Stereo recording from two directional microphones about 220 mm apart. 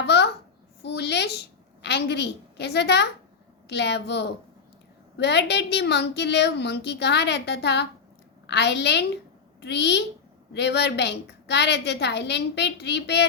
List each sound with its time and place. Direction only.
0.0 s babbling: 50° left (ahead or behind)
0.8 s a sound: 50° left (ahead or behind)
1.8 s a woman's voice: 50° left (ahead or behind)